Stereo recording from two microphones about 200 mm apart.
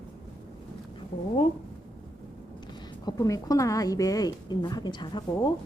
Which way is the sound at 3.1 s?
15° left (ahead or behind).